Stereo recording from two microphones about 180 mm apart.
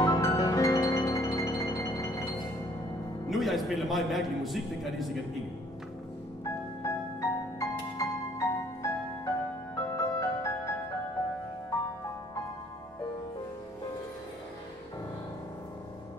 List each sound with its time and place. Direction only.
0.0 s music: 20° left (ahead or behind)
3.3 s a man's voice: centre (ahead or behind)
6.4 s music: 15° left (ahead or behind)